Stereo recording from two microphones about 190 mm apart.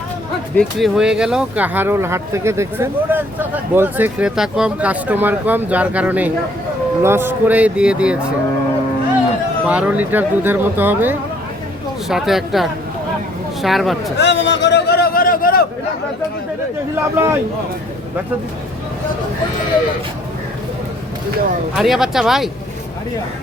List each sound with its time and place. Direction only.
0.5 s speech: centre (ahead or behind)
9.6 s speech: 5° right (ahead or behind)
14.2 s a sound: 65° left (ahead or behind); by 15.6 s 50° left (ahead or behind)
16.9 s speech: 10° right (ahead or behind)
21.8 s speech: centre (ahead or behind)